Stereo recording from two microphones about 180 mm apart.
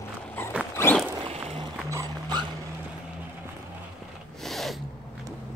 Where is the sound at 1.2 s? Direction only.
35° right (ahead or behind).